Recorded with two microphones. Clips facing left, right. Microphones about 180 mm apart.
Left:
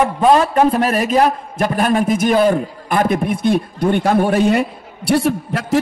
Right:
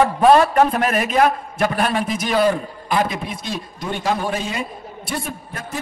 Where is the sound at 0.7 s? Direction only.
35° left (ahead or behind).